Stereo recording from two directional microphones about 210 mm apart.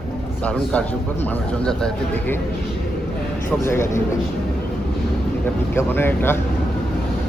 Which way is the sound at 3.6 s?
10° left (ahead or behind).